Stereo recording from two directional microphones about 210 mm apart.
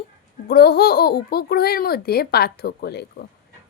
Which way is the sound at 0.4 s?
50° left (ahead or behind).